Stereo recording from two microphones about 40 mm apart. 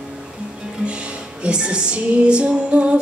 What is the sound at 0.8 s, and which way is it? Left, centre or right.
Music, right.